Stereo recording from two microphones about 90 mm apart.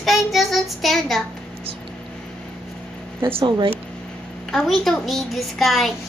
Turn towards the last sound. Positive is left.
turn(degrees=0)  # may be behind; listen again after turning